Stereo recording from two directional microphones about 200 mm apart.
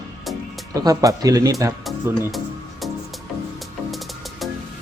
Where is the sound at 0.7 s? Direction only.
15° right (ahead or behind).